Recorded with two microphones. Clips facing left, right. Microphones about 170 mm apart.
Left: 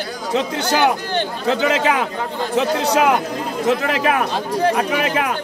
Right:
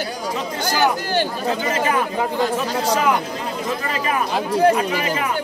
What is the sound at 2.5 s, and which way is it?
Speech, 65° left (ahead or behind).